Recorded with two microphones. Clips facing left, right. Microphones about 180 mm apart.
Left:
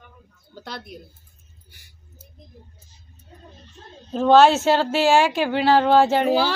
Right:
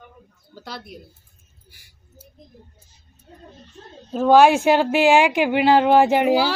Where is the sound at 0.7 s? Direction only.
5° right (ahead or behind).